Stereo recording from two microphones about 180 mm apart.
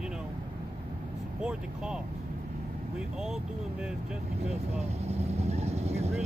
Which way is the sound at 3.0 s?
5° right (ahead or behind).